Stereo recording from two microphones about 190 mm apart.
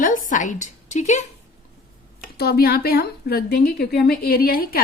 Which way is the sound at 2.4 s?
55° left (ahead or behind).